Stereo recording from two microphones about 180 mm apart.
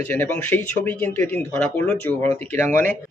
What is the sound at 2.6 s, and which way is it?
Speech, 45° right (ahead or behind).